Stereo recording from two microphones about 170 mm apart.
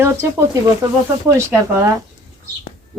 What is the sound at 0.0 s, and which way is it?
Speech, 15° right (ahead or behind).